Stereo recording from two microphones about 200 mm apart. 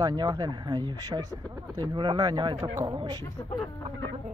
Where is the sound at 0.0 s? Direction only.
20° right (ahead or behind).